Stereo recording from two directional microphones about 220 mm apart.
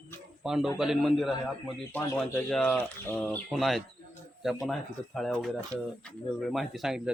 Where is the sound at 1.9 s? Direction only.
10° left (ahead or behind).